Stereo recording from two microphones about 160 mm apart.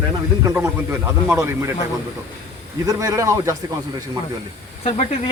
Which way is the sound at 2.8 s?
20° right (ahead or behind).